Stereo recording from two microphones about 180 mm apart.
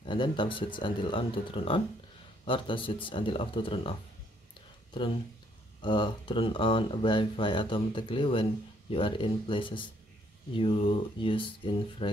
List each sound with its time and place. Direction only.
0.0 s speech: 25° left (ahead or behind)
5.8 s speech: 25° left (ahead or behind)